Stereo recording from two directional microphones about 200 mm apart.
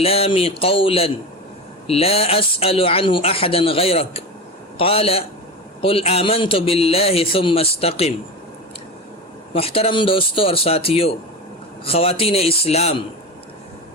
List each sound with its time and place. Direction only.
0.0 s speech: 30° left (ahead or behind)
9.6 s speech: 30° left (ahead or behind)